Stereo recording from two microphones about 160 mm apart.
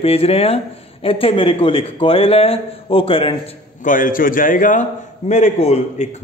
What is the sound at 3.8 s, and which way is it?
A man's voice, 60° left (ahead or behind).